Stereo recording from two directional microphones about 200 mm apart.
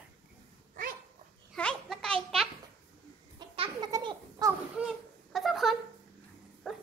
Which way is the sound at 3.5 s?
30° right (ahead or behind).